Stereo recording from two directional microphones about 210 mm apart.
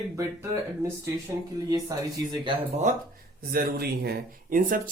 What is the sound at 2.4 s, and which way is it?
Speech, 35° right (ahead or behind).